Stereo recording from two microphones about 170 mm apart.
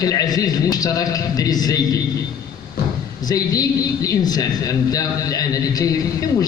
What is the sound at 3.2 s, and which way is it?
A woman's voice, 20° left (ahead or behind).